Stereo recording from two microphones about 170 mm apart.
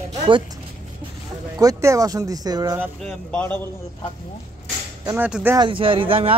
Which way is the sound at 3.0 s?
10° left (ahead or behind).